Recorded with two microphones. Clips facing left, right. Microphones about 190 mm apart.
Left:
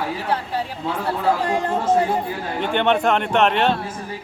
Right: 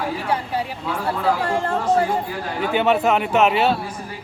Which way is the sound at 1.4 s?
20° left (ahead or behind).